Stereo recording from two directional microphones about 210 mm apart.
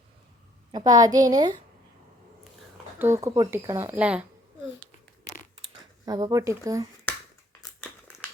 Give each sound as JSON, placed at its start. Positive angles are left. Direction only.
{"t": 0.7, "sound": "a woman's voice", "side_deg": -20}
{"t": 3.0, "sound": "speech", "side_deg": -15}
{"t": 5.3, "sound": "crunch", "side_deg": 35}
{"t": 6.1, "sound": "speech", "side_deg": -20}
{"t": 7.6, "sound": "crumpling", "side_deg": 10}